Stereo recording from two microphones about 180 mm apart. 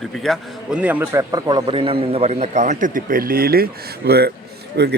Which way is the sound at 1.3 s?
25° right (ahead or behind).